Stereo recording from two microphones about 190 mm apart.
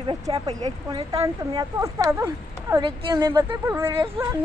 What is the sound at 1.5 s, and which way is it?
Speech, 15° right (ahead or behind).